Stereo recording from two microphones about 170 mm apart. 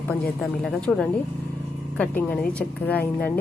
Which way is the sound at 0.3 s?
Centre (ahead or behind).